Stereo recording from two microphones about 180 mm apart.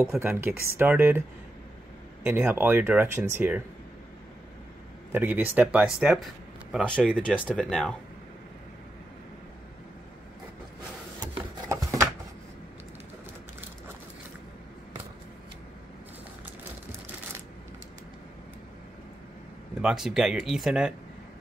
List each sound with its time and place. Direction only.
0.2 s speech: 10° right (ahead or behind)
2.2 s speech: 10° right (ahead or behind)
5.1 s speech: 10° right (ahead or behind)
7.5 s speech: 5° left (ahead or behind)
11.1 s a sound: 20° right (ahead or behind)
19.8 s speech: centre (ahead or behind)